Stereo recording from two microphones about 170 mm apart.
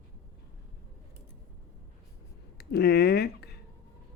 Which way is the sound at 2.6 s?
70° left (ahead or behind).